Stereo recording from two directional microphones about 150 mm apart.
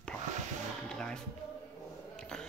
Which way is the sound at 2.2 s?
5° left (ahead or behind).